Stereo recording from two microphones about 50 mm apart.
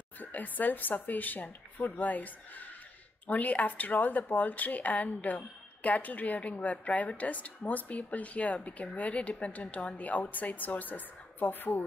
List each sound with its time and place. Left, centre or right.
0.2 s a woman's voice: left